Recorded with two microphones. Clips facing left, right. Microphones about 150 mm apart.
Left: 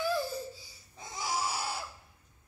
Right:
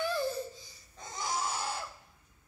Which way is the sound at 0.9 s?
10° left (ahead or behind).